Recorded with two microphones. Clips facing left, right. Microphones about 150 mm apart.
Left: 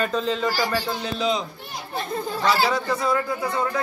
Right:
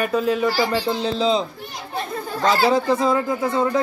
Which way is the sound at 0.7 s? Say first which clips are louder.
Right 5 dB; 25° right (ahead or behind).